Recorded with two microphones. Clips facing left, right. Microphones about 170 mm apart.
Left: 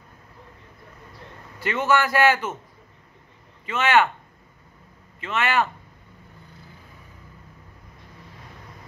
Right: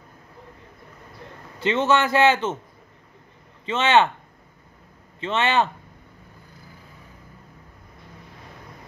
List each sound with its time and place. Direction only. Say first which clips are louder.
1.6 s a man's voice: right 2 dB; 25° right (ahead or behind)
3.6 s a man's voice: right 1 dB; 25° right (ahead or behind)
5.2 s a man's voice: right 2 dB; 25° right (ahead or behind)